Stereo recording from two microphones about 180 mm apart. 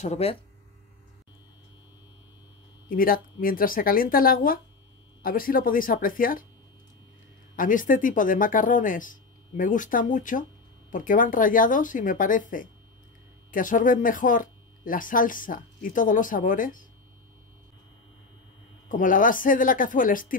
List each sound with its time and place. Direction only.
0.0 s speech: 35° left (ahead or behind)
2.9 s speech: 50° left (ahead or behind)
7.5 s speech: 45° left (ahead or behind)
18.9 s speech: 50° left (ahead or behind)